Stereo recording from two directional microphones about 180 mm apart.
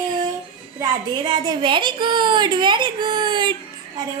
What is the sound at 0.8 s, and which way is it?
A child's voice, 25° right (ahead or behind).